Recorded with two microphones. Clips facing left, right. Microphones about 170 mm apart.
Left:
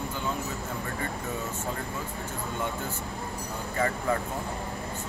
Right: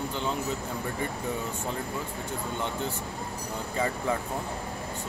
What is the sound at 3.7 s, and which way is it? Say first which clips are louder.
Speech: left 1 dB; 15° right (ahead or behind).